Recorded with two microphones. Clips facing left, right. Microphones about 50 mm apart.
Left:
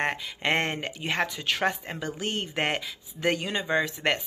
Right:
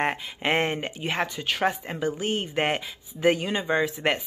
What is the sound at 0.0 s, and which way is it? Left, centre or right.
Speech, centre.